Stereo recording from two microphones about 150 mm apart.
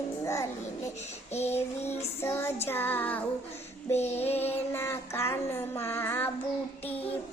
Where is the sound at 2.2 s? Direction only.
15° left (ahead or behind).